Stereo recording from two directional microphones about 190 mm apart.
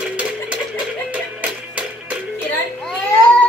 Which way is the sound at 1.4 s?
5° right (ahead or behind).